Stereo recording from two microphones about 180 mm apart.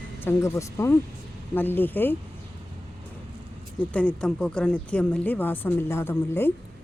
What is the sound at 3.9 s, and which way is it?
A woman's voice, 5° left (ahead or behind).